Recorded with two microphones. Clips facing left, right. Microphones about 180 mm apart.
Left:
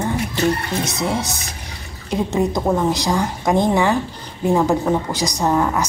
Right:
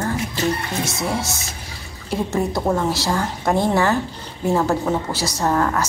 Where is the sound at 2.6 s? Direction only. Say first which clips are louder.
Left 2 dB; 5° left (ahead or behind).